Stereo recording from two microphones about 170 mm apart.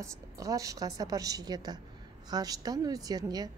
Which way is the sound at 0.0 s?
20° right (ahead or behind).